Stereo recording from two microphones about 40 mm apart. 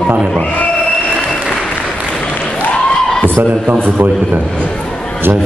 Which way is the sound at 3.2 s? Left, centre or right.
Right.